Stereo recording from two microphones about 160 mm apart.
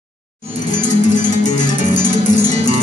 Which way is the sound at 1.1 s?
50° left (ahead or behind).